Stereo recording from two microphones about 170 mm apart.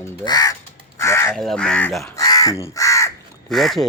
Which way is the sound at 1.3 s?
5° left (ahead or behind).